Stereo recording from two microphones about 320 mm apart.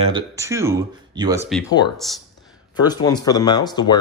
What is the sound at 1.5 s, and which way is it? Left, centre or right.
Speech, centre.